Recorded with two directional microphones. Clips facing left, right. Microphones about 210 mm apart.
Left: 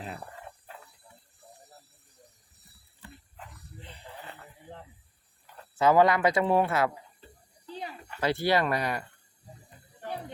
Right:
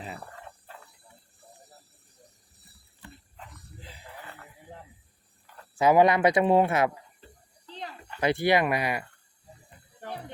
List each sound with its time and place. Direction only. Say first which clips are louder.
3.3 s dog: even; centre (ahead or behind)
5.8 s speech: right 2 dB; 15° right (ahead or behind)
7.7 s a sound: left 2 dB; 10° left (ahead or behind)
8.2 s speech: right 2 dB; 15° right (ahead or behind)